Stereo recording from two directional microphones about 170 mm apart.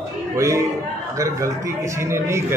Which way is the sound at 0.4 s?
20° right (ahead or behind).